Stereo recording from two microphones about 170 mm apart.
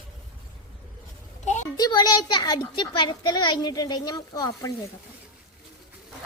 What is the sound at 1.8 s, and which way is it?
A child's voice, 25° left (ahead or behind).